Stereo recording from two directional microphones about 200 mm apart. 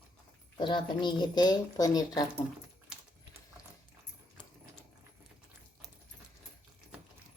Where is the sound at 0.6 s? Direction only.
20° left (ahead or behind).